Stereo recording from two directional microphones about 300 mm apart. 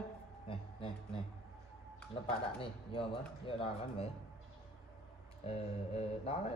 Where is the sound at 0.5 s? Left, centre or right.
Centre.